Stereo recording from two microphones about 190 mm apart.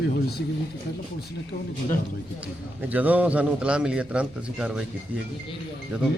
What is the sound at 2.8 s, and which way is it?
A man's voice, 10° right (ahead or behind).